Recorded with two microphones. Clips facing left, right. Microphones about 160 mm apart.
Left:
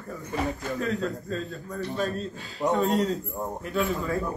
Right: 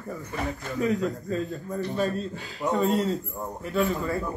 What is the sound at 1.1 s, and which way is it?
Speech, 20° right (ahead or behind).